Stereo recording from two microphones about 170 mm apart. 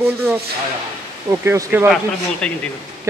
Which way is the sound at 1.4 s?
15° right (ahead or behind).